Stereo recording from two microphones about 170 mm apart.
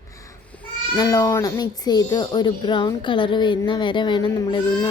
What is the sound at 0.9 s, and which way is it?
A woman's voice, 20° left (ahead or behind).